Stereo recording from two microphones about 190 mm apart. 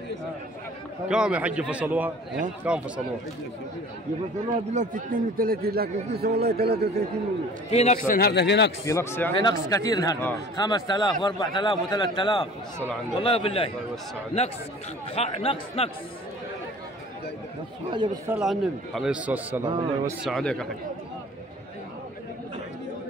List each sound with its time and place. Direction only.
1.0 s a man's voice: 5° right (ahead or behind)
4.5 s speech: 40° right (ahead or behind)
7.7 s speech: 35° left (ahead or behind)
8.1 s speech: 55° left (ahead or behind)
8.8 s a man's voice: 15° left (ahead or behind)
15.1 s speech: 30° left (ahead or behind)
17.8 s a man's voice: 25° right (ahead or behind)
18.3 s a man's voice: centre (ahead or behind)
19.6 s a man's voice: 20° right (ahead or behind)
20.2 s speech: centre (ahead or behind)